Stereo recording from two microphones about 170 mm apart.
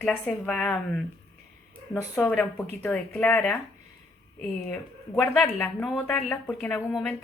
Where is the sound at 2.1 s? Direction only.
10° left (ahead or behind).